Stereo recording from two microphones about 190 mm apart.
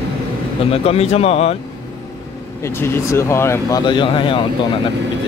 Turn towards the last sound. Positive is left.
turn(degrees=25)  # may be behind; listen again after turning